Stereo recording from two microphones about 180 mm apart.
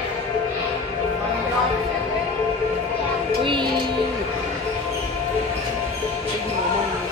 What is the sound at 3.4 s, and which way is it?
Music, 30° right (ahead or behind).